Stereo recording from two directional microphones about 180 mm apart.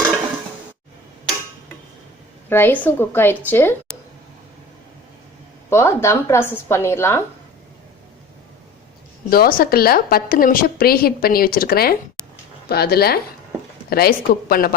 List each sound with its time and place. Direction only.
2.5 s a woman's voice: 10° left (ahead or behind)
5.7 s a woman's voice: 15° left (ahead or behind)
9.3 s a woman's voice: 55° left (ahead or behind)